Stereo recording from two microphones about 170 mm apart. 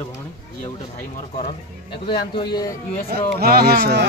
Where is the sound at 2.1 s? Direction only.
25° left (ahead or behind).